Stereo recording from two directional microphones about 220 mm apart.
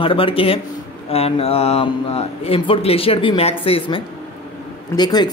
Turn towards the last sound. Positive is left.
turn(degrees=20)  # may be behind; listen again after turning